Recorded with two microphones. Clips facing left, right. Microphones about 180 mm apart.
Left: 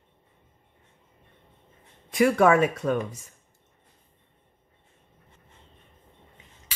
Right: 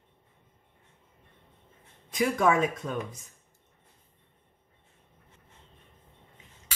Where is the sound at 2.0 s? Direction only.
70° left (ahead or behind).